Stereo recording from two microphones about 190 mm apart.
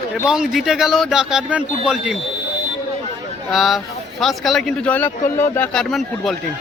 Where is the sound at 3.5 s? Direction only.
Centre (ahead or behind).